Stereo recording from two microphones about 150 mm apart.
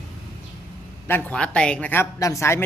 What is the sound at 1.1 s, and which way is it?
Speech, 10° left (ahead or behind).